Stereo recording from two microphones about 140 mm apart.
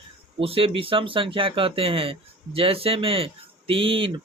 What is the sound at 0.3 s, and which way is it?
Speech, 40° right (ahead or behind).